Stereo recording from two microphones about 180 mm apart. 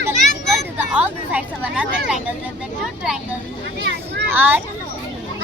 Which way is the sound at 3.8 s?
75° right (ahead or behind).